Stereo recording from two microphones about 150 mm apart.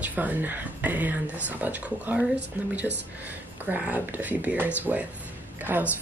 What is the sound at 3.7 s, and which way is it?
Speech, 10° right (ahead or behind).